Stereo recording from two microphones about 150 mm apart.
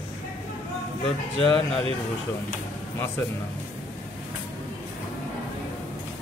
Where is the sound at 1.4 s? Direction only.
5° left (ahead or behind).